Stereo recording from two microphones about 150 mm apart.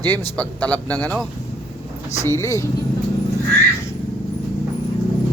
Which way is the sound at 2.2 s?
20° left (ahead or behind).